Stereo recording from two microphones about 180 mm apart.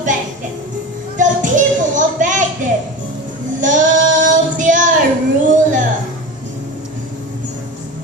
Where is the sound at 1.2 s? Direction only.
45° right (ahead or behind).